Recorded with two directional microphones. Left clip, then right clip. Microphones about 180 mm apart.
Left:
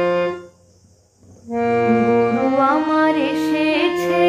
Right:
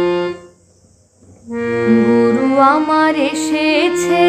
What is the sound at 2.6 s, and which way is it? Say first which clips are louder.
Music: right 6 dB; 35° right (ahead or behind).